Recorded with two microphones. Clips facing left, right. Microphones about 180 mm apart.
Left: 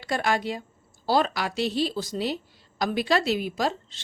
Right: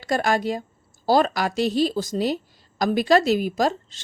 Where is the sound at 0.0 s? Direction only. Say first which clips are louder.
Right 4 dB; 45° right (ahead or behind).